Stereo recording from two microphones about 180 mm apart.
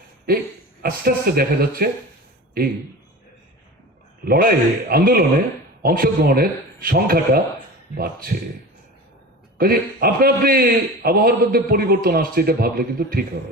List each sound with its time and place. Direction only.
0.3 s a man's voice: 55° right (ahead or behind)
4.3 s a man's voice: 55° right (ahead or behind)
9.6 s a man's voice: 55° right (ahead or behind)